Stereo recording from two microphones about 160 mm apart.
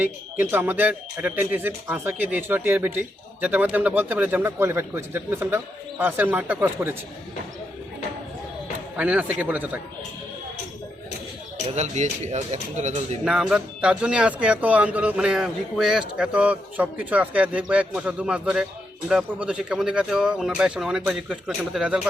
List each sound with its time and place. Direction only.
0.3 s speech: 15° right (ahead or behind)
9.0 s speech: 10° right (ahead or behind)
11.7 s speech: 45° right (ahead or behind)
13.2 s speech: 5° right (ahead or behind)